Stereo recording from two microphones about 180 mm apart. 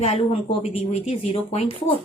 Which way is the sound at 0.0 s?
35° left (ahead or behind).